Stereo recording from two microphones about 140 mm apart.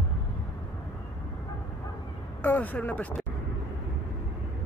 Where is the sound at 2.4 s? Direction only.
10° left (ahead or behind).